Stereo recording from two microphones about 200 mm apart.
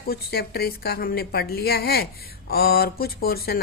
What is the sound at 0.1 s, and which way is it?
Speech, 50° left (ahead or behind).